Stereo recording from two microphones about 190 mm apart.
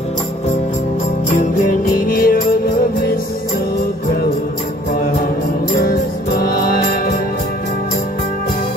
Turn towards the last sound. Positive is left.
turn(degrees=55)  # may be behind; listen again after turning